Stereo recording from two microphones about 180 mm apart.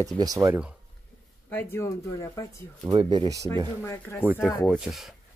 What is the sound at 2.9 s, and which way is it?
Speech, 25° right (ahead or behind).